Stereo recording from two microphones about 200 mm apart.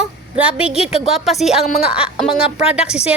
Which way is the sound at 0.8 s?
30° left (ahead or behind).